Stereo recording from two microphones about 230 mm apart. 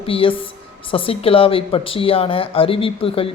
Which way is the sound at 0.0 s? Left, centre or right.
Left.